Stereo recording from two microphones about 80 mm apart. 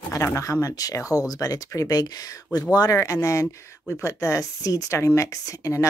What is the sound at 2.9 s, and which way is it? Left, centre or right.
Speech, left.